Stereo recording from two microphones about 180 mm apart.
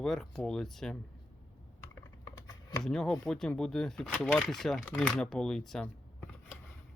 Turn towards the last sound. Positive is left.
turn(degrees=5)  # may be behind; listen again after turning